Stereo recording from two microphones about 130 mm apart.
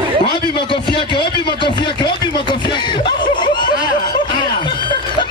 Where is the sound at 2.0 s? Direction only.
35° left (ahead or behind).